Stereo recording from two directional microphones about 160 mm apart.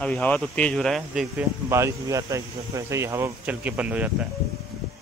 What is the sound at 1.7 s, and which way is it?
A man's voice, 20° right (ahead or behind).